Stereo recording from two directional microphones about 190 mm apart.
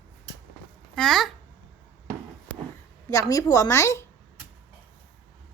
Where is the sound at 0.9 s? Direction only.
Centre (ahead or behind).